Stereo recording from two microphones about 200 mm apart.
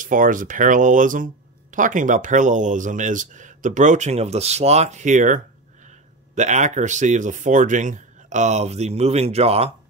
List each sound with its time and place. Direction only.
0.0 s speech: 40° right (ahead or behind)